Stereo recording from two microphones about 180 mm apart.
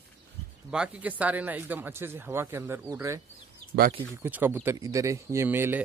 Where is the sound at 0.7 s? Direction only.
5° right (ahead or behind).